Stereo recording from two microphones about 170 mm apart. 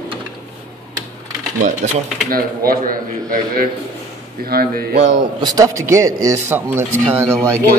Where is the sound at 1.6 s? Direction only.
55° right (ahead or behind).